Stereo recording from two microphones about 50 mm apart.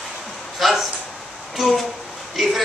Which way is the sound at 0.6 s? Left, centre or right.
Centre.